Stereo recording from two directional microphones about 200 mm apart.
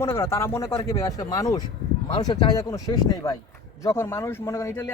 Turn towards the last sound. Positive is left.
turn(degrees=15)  # may be behind; listen again after turning